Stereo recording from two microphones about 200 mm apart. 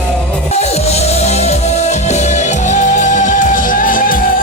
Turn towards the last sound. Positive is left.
turn(degrees=45)  # may be behind; listen again after turning